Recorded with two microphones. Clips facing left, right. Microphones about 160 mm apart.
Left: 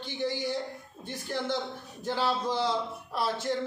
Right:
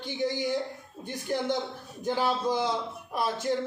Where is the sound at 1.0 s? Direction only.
15° right (ahead or behind).